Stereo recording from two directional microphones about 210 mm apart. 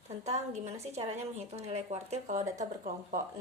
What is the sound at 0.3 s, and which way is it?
A woman's voice, 30° right (ahead or behind).